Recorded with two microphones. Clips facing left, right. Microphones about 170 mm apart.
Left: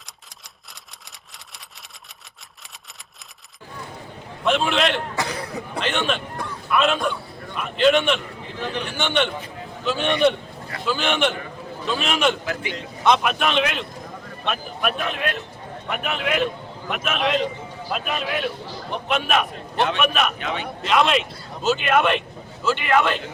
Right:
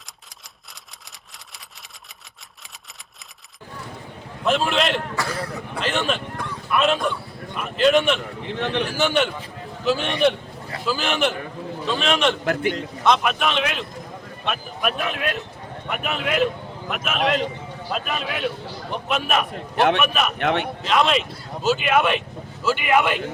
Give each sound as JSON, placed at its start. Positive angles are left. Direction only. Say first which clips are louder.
{"t": 4.4, "sound": "speech", "louder": "even", "side_deg": 0}
{"t": 5.1, "sound": "speech", "louder": "even", "side_deg": 20}
{"t": 5.8, "sound": "a man's voice", "louder": "right 1 dB", "side_deg": 0}
{"t": 8.4, "sound": "a man's voice", "louder": "right 4 dB", "side_deg": -75}
{"t": 8.9, "sound": "speech", "louder": "left 1 dB", "side_deg": -5}
{"t": 12.5, "sound": "a man's voice", "louder": "right 6 dB", "side_deg": -50}
{"t": 13.1, "sound": "speech", "louder": "left 1 dB", "side_deg": 0}
{"t": 20.4, "sound": "a man's voice", "louder": "right 6 dB", "side_deg": -70}
{"t": 20.8, "sound": "a man's voice", "louder": "left 2 dB", "side_deg": 0}